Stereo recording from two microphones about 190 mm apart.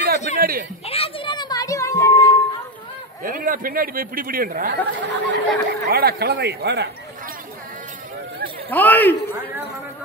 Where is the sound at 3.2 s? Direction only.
45° right (ahead or behind).